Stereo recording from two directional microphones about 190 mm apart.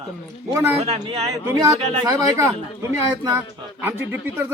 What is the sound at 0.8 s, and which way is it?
Speech, 30° right (ahead or behind).